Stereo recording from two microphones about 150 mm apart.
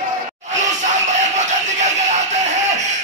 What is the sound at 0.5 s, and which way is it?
Music, 55° right (ahead or behind).